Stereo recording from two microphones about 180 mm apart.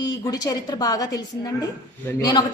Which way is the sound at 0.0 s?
20° left (ahead or behind).